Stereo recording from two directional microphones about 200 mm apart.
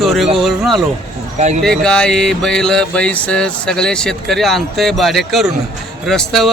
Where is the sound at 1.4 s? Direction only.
35° right (ahead or behind).